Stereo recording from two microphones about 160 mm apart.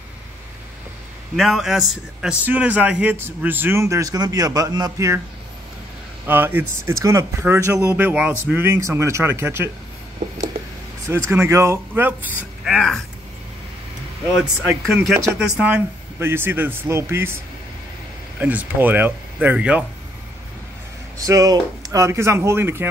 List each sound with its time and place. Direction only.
1.3 s a man's voice: centre (ahead or behind); by 5.2 s 20° right (ahead or behind)
6.2 s a man's voice: 15° right (ahead or behind)
11.1 s a man's voice: 15° right (ahead or behind)
12.6 s speech: 5° left (ahead or behind)
14.3 s a man's voice: 15° right (ahead or behind)
18.4 s a man's voice: 10° right (ahead or behind)
21.3 s a man's voice: 20° right (ahead or behind)